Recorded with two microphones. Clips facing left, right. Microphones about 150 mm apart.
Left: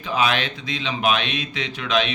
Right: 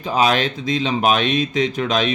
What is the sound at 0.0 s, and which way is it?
A man's voice, 40° right (ahead or behind).